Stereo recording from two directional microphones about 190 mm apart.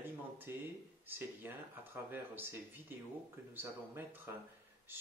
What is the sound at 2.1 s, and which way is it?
Speech, 10° right (ahead or behind).